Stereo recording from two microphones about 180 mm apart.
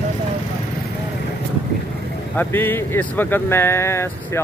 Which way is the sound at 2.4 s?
10° left (ahead or behind).